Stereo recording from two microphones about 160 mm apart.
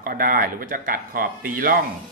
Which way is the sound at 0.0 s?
65° right (ahead or behind).